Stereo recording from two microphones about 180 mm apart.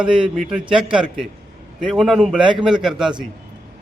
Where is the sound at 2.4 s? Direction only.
25° right (ahead or behind).